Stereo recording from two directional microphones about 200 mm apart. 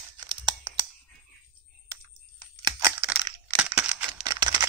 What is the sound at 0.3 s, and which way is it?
Tearing, 20° right (ahead or behind).